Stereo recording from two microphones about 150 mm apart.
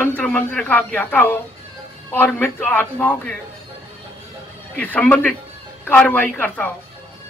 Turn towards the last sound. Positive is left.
turn(degrees=10)  # may be behind; listen again after turning